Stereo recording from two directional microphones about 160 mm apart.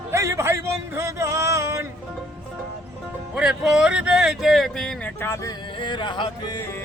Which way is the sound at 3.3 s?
5° right (ahead or behind).